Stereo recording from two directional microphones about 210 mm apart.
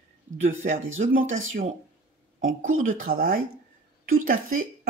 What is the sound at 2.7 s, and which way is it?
Speech, 40° right (ahead or behind).